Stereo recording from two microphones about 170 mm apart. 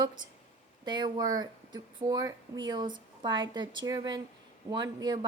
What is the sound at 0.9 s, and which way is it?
Speech, 25° right (ahead or behind).